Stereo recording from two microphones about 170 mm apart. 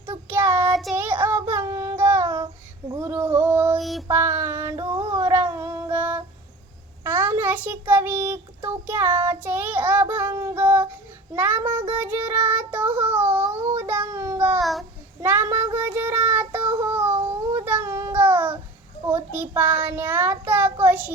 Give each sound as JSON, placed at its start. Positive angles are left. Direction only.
{"t": 0.1, "sound": "child singing", "side_deg": -15}
{"t": 2.9, "sound": "female singing", "side_deg": -15}
{"t": 3.8, "sound": "a sound", "side_deg": 0}
{"t": 4.1, "sound": "child singing", "side_deg": -15}
{"t": 15.2, "sound": "child singing", "side_deg": -15}
{"t": 19.0, "sound": "a child's voice", "side_deg": -10}
{"t": 20.5, "sound": "child singing", "side_deg": -10}